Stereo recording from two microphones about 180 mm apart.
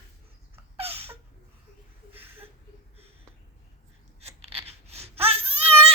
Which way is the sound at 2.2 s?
10° right (ahead or behind).